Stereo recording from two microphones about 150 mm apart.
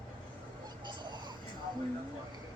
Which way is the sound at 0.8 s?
30° right (ahead or behind).